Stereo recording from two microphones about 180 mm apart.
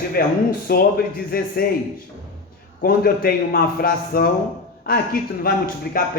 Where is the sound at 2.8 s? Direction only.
55° left (ahead or behind).